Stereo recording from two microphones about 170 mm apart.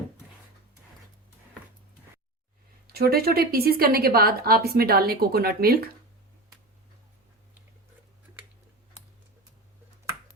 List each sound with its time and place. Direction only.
2.8 s a woman's voice: 65° right (ahead or behind)